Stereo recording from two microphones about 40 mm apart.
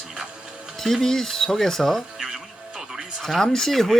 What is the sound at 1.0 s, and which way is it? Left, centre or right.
Speech, centre.